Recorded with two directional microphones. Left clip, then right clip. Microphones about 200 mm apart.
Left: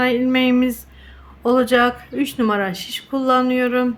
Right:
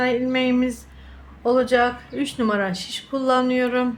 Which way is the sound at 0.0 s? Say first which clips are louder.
Left 3 dB; 15° left (ahead or behind).